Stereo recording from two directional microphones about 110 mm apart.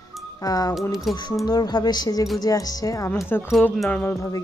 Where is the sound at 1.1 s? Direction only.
Centre (ahead or behind).